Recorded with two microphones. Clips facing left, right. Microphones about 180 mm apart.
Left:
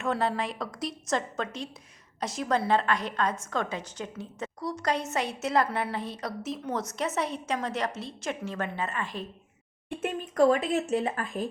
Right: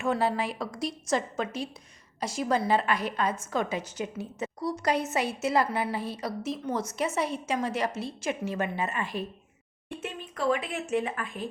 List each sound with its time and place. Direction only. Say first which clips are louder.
0.0 s a woman's voice: right 1 dB; 5° right (ahead or behind)
10.0 s speech: left 9 dB; 45° left (ahead or behind)